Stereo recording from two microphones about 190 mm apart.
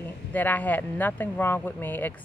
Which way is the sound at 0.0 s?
10° left (ahead or behind).